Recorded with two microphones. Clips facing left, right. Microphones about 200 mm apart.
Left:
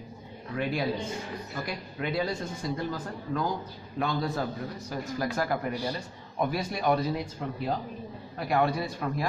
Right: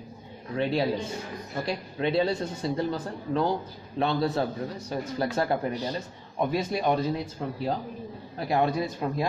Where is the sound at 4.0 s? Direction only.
30° right (ahead or behind).